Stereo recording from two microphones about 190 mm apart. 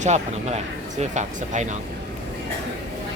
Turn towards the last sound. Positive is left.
turn(degrees=-35)  # may be behind; listen again after turning